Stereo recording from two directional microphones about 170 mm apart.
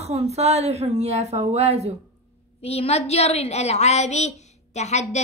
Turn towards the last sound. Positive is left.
turn(degrees=40)  # may be behind; listen again after turning